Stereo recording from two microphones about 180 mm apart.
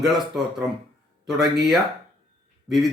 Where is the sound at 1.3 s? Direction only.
Centre (ahead or behind).